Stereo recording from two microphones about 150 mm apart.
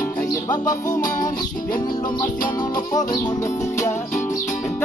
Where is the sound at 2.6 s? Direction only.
25° left (ahead or behind).